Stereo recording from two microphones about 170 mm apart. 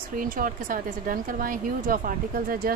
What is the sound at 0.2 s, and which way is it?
Speech, 55° right (ahead or behind).